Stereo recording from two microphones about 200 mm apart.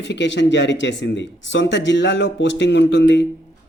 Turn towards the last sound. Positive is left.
turn(degrees=65)  # may be behind; listen again after turning